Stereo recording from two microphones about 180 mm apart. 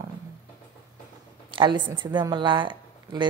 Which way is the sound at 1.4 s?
25° right (ahead or behind).